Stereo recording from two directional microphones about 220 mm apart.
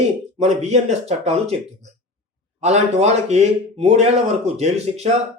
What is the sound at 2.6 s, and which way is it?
Speech, 30° right (ahead or behind).